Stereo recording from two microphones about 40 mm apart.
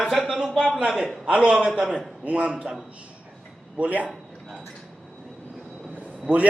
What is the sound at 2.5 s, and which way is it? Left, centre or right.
Speech, centre.